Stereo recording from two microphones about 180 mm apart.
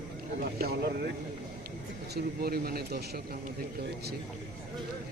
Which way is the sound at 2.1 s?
60° right (ahead or behind).